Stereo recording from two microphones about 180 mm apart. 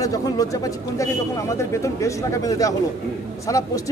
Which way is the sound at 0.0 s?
20° left (ahead or behind).